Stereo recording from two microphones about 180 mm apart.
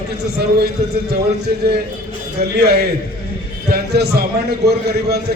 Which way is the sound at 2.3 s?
65° right (ahead or behind).